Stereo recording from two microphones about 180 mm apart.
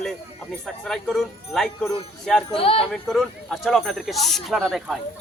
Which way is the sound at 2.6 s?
30° left (ahead or behind).